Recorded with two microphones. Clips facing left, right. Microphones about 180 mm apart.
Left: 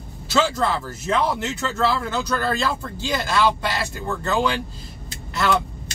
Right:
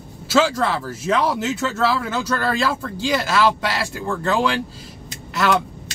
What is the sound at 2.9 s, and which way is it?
Speech, 90° right.